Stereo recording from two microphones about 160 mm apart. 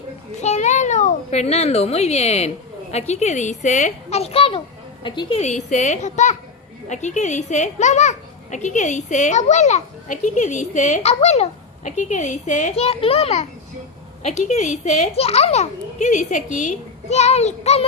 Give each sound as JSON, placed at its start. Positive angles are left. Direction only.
{"t": 0.4, "sound": "a child's voice", "side_deg": 45}
{"t": 5.4, "sound": "a child's voice", "side_deg": 50}